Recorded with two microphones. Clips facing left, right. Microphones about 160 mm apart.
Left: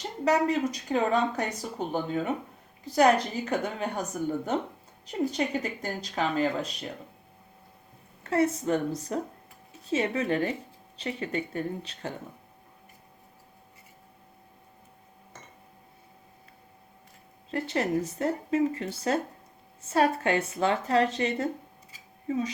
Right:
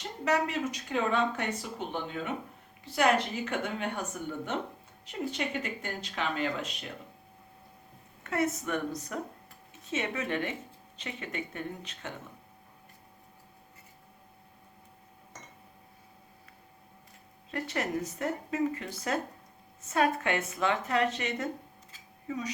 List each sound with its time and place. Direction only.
0.3 s speech: 35° left (ahead or behind)
8.2 s speech: 30° left (ahead or behind)
17.5 s a woman's voice: 30° left (ahead or behind)